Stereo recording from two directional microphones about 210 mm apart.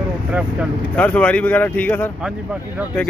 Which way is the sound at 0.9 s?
5° left (ahead or behind).